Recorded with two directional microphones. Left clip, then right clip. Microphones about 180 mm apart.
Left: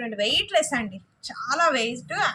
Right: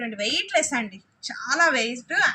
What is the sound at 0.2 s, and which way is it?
A woman's voice, 20° left (ahead or behind).